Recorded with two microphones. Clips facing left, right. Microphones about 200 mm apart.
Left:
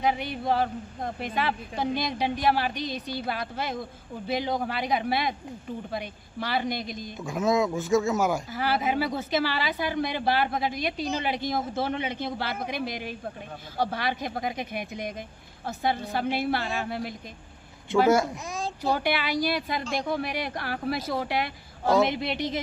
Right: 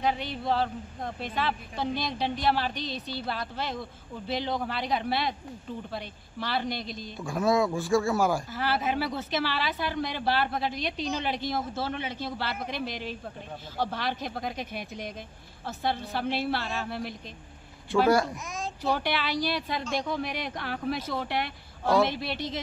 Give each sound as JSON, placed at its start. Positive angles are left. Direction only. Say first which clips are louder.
{"t": 0.0, "sound": "a child's voice", "louder": "left 2 dB", "side_deg": 10}
{"t": 18.8, "sound": "speech", "louder": "left 2 dB", "side_deg": 10}